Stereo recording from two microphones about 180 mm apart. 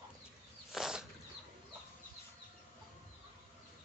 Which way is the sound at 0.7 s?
5° right (ahead or behind).